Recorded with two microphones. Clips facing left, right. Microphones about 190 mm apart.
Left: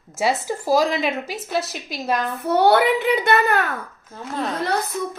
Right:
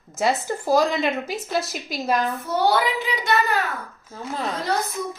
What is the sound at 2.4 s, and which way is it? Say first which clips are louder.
A woman's voice: left 5 dB; 65° left (ahead or behind).